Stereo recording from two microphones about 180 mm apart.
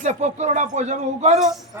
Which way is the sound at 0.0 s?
40° right (ahead or behind).